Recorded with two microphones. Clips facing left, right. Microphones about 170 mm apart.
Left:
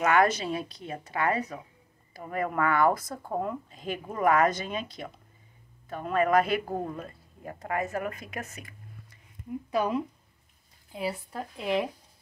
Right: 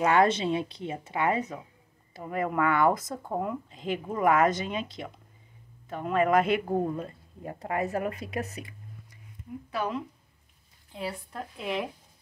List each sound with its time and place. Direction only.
0.0 s speech: 30° right (ahead or behind)
9.7 s speech: 15° left (ahead or behind)